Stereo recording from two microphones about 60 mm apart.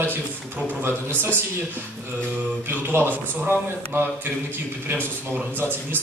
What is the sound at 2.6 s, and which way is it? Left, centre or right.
A man's voice, right.